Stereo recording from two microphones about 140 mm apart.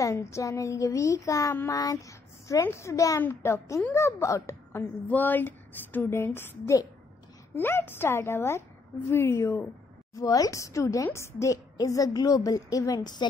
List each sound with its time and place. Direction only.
0.0 s child singing: 20° left (ahead or behind)
7.5 s a woman's voice: 15° left (ahead or behind)
9.1 s child singing: 20° left (ahead or behind)